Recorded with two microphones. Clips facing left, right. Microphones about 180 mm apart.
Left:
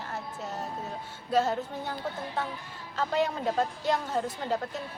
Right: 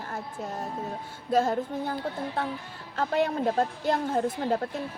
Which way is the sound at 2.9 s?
55° right (ahead or behind).